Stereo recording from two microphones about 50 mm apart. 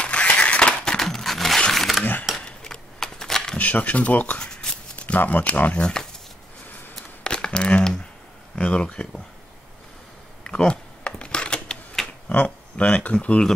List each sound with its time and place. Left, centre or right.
0.0 s a sound: left
0.9 s a sound: centre
1.7 s mechanisms: centre
2.4 s a sound: centre
3.5 s speech: left
4.4 s shuffling cards: centre
4.9 s speech: left
7.2 s crumpling: centre
8.5 s speech: left
10.4 s typewriter: centre
12.3 s speech: left